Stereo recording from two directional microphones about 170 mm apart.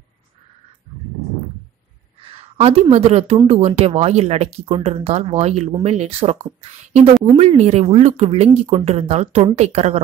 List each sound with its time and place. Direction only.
2.5 s speech: 35° right (ahead or behind)
7.3 s speech: 40° right (ahead or behind)